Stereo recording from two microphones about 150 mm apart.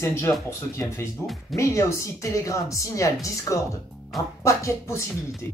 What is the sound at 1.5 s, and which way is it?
Speech, 20° left (ahead or behind).